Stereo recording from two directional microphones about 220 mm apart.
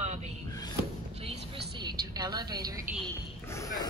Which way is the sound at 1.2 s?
25° right (ahead or behind).